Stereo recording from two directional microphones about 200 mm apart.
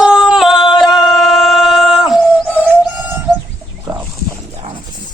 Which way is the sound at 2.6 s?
5° right (ahead or behind).